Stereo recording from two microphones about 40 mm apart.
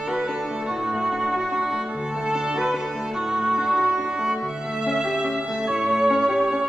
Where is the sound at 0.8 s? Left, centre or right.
Centre.